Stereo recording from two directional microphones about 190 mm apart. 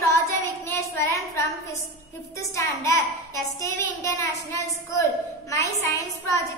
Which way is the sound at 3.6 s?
15° left (ahead or behind).